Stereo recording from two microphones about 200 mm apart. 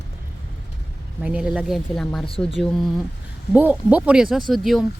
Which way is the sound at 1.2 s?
5° right (ahead or behind).